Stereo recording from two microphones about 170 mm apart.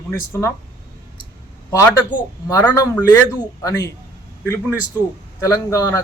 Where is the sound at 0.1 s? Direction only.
15° left (ahead or behind).